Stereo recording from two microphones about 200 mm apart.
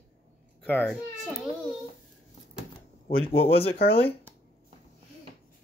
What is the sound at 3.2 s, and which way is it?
Speech, 30° left (ahead or behind).